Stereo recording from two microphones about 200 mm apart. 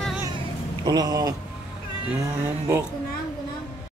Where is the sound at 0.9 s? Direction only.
20° right (ahead or behind).